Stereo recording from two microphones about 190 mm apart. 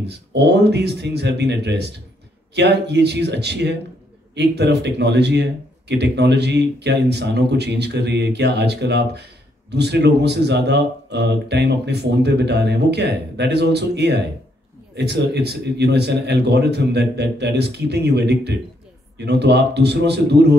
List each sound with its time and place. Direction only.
0.0 s speech: 60° right (ahead or behind)